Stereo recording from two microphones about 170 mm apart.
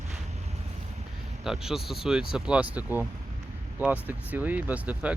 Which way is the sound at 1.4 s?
Centre (ahead or behind).